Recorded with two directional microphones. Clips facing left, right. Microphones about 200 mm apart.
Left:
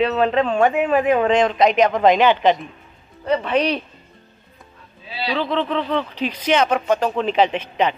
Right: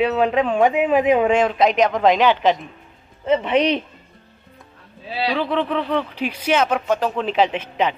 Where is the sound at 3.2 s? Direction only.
20° right (ahead or behind).